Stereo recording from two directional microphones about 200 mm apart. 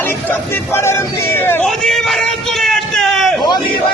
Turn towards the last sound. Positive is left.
turn(degrees=0)  # may be behind; listen again after turning